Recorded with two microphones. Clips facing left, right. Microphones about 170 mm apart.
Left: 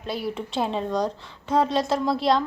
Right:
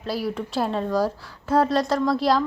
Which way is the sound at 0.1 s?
Centre (ahead or behind).